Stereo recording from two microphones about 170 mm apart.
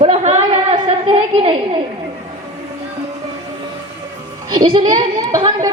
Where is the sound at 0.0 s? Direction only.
40° right (ahead or behind).